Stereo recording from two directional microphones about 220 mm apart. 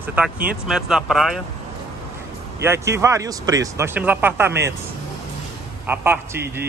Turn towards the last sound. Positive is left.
turn(degrees=-10)  # may be behind; listen again after turning